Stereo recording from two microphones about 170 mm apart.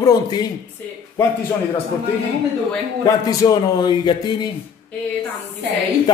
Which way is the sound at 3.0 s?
20° left (ahead or behind).